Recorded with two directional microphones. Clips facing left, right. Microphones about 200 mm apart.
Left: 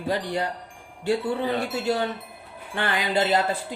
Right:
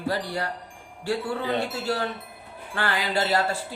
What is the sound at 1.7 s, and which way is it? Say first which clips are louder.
Wind chime: left 3 dB; 20° left (ahead or behind).